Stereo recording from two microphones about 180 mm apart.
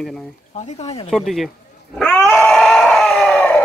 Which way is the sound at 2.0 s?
5° left (ahead or behind).